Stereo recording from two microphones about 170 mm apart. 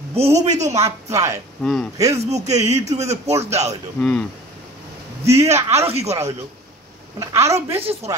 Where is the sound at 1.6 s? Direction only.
Centre (ahead or behind).